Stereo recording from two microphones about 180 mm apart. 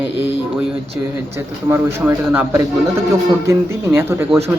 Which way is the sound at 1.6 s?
10° right (ahead or behind).